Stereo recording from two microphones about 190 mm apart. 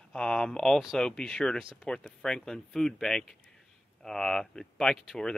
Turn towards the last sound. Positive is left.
turn(degrees=5)  # may be behind; listen again after turning